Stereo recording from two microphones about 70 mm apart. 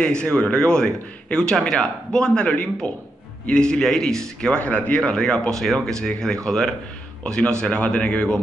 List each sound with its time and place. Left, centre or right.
0.0 s speech: centre
2.4 s a man's voice: left